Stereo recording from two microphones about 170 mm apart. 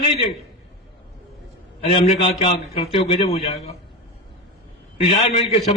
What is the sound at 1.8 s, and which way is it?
A man's voice, 35° left (ahead or behind).